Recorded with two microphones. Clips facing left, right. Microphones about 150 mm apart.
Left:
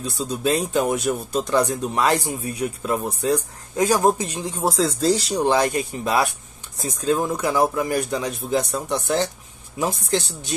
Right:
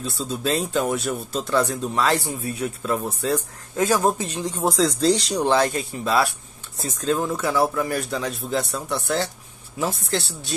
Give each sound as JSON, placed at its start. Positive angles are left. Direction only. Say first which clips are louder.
{"t": 0.0, "sound": "speech", "louder": "left 2 dB", "side_deg": 15}